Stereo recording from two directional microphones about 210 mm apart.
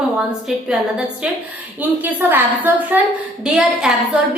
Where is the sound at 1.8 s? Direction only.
10° right (ahead or behind).